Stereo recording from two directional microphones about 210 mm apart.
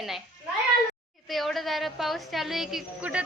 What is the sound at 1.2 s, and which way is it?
A woman's voice, centre (ahead or behind).